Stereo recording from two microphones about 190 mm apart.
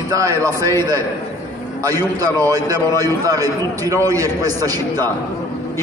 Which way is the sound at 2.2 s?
20° right (ahead or behind).